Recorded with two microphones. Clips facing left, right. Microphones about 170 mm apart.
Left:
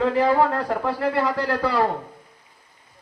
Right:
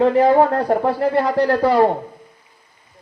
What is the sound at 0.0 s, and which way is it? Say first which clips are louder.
Speech: right 6 dB; 35° right (ahead or behind).